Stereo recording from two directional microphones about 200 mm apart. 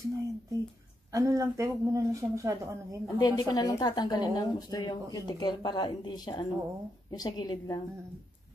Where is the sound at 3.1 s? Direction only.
20° left (ahead or behind).